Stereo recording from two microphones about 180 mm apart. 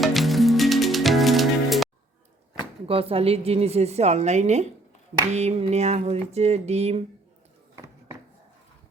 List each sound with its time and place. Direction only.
0.0 s music: centre (ahead or behind)
2.8 s a woman's voice: 30° right (ahead or behind)